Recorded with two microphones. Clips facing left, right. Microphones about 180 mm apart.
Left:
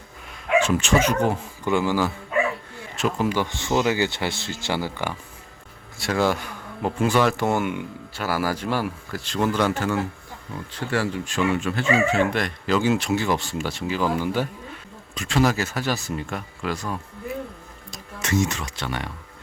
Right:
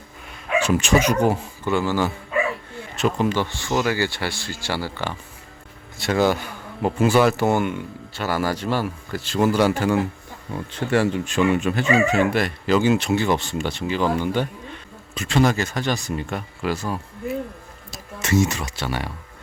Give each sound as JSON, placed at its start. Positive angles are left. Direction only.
{"t": 0.6, "sound": "speech", "side_deg": -15}
{"t": 1.6, "sound": "speech", "side_deg": 15}
{"t": 2.9, "sound": "speech", "side_deg": 0}
{"t": 6.0, "sound": "speech", "side_deg": 0}
{"t": 7.7, "sound": "speech", "side_deg": 10}
{"t": 9.2, "sound": "speech", "side_deg": -5}